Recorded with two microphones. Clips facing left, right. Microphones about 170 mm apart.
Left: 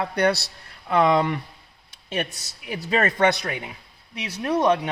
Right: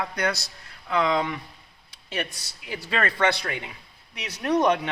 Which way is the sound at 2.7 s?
20° left (ahead or behind).